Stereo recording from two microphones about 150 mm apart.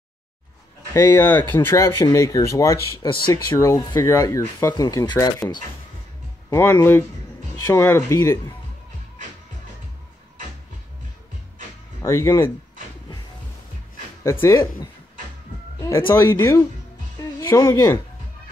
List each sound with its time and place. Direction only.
0.9 s speech: 15° left (ahead or behind)
6.5 s speech: 15° left (ahead or behind)
12.0 s speech: 20° left (ahead or behind)
14.4 s speech: 20° left (ahead or behind)
16.1 s speech: 20° left (ahead or behind)